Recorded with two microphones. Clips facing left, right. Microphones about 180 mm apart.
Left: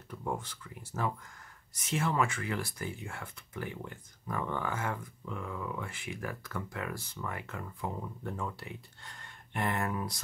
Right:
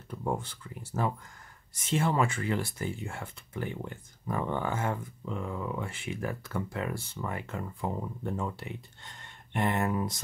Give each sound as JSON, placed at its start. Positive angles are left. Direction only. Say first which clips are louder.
{"t": 0.1, "sound": "speech", "louder": "right 4 dB", "side_deg": -30}